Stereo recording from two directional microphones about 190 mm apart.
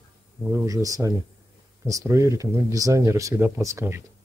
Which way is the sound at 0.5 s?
15° right (ahead or behind).